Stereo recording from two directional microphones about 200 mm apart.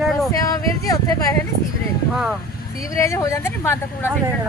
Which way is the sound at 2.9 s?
15° left (ahead or behind).